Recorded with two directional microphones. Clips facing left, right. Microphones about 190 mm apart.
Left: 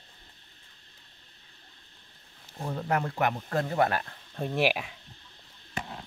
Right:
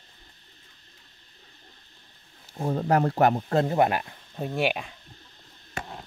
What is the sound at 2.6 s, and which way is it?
Speech, 40° right (ahead or behind).